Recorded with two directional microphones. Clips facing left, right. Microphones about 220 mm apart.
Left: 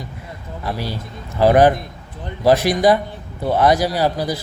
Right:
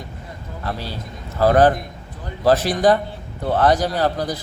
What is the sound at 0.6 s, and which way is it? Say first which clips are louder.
A man's voice: left 3 dB; 10° left (ahead or behind).